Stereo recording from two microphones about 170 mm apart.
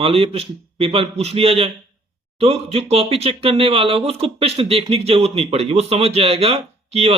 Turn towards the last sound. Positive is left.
turn(degrees=-35)  # may be behind; listen again after turning